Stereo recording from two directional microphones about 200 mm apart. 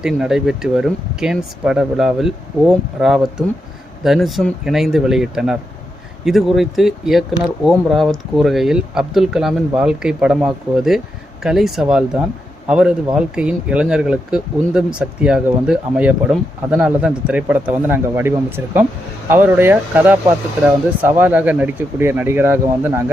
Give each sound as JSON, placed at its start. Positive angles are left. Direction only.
{"t": 0.0, "sound": "speech", "side_deg": -5}